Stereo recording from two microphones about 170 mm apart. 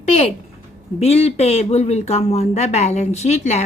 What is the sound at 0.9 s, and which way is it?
Speech, 35° left (ahead or behind).